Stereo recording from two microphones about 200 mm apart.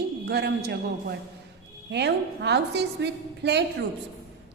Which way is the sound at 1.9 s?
60° right (ahead or behind).